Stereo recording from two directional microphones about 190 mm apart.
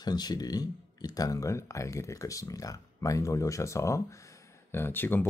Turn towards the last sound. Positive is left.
turn(degrees=10)  # may be behind; listen again after turning